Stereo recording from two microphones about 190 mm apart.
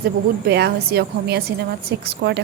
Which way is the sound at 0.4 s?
60° right (ahead or behind).